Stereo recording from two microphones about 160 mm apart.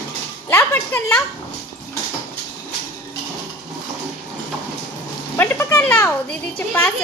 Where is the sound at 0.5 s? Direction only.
15° left (ahead or behind).